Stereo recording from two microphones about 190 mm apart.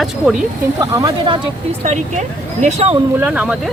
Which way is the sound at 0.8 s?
20° right (ahead or behind).